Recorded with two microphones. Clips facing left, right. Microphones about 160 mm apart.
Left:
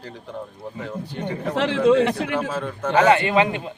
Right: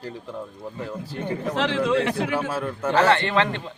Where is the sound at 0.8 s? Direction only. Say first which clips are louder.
Left 1 dB; 5° right (ahead or behind).